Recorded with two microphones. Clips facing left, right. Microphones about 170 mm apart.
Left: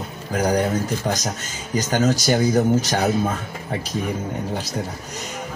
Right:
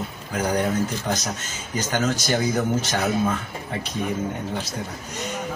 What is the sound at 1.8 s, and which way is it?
Speech, 35° left (ahead or behind).